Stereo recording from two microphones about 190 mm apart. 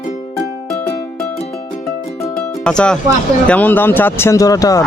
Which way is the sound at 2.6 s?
5° left (ahead or behind).